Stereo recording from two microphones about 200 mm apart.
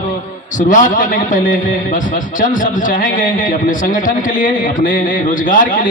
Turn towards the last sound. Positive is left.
turn(degrees=40)  # may be behind; listen again after turning